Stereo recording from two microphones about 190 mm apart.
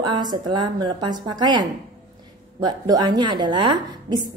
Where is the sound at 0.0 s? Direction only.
20° right (ahead or behind).